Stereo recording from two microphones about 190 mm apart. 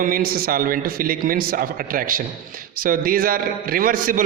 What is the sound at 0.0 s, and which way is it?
A man's voice, 50° right (ahead or behind).